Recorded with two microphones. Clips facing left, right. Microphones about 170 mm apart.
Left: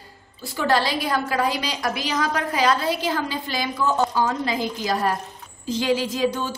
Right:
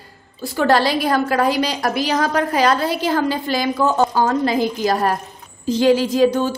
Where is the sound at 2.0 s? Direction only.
40° right (ahead or behind).